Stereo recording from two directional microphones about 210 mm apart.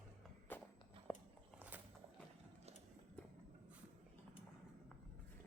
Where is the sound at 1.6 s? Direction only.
10° right (ahead or behind).